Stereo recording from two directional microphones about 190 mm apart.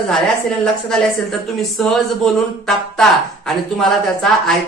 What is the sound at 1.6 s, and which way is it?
Speech, centre (ahead or behind).